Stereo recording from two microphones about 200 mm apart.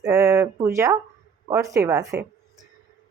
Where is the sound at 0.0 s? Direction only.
15° right (ahead or behind).